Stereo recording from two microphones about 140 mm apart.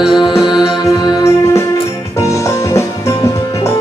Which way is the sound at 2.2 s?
20° left (ahead or behind).